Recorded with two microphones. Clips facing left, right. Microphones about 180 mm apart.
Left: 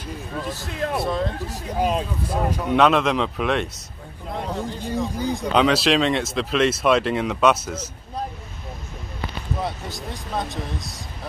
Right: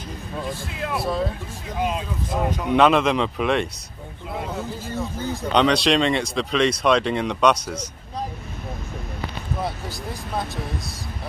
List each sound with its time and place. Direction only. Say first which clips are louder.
0.6 s speech: left 3 dB; 40° left (ahead or behind)
0.9 s speech: right 1 dB; 5° right (ahead or behind)
1.5 s speech: left 3 dB; 40° left (ahead or behind)
2.5 s speech: right 1 dB; centre (ahead or behind)
4.8 s speech: left 6 dB; 15° left (ahead or behind)
5.5 s speech: even; 5° left (ahead or behind)